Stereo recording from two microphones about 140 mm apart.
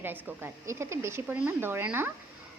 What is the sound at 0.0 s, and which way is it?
A woman's voice, 15° right (ahead or behind).